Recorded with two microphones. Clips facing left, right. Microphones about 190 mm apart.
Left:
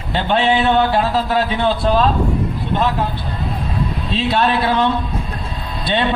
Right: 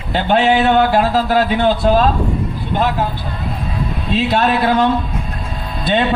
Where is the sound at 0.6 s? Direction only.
45° right (ahead or behind).